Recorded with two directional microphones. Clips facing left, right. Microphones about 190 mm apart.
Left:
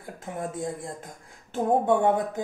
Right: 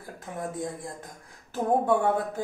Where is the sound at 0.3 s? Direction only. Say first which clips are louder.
Left 2 dB; 25° left (ahead or behind).